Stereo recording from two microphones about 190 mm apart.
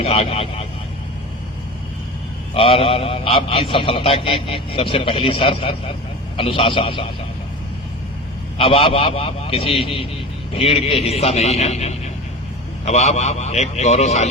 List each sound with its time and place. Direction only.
0.0 s a man's voice: 30° left (ahead or behind)
2.6 s a man's voice: 30° left (ahead or behind)
8.5 s a man's voice: 30° left (ahead or behind)